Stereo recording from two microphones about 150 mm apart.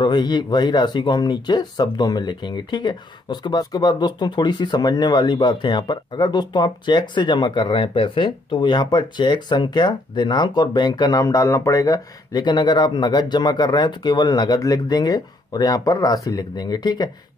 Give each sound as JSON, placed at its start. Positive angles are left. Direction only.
{"t": 0.0, "sound": "speech", "side_deg": 30}